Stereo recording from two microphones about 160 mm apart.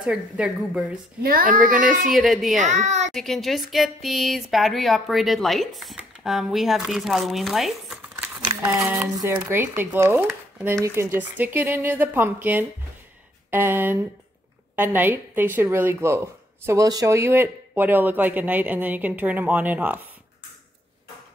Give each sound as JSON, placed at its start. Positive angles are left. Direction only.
{"t": 0.0, "sound": "a woman's voice", "side_deg": -5}
{"t": 1.2, "sound": "speech", "side_deg": -65}
{"t": 2.1, "sound": "speech", "side_deg": 0}
{"t": 2.6, "sound": "a woman's voice", "side_deg": -50}
{"t": 3.1, "sound": "speech", "side_deg": 0}
{"t": 8.5, "sound": "a woman's voice", "side_deg": -20}